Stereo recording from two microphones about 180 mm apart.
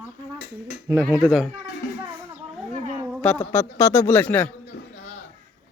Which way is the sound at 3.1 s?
5° left (ahead or behind).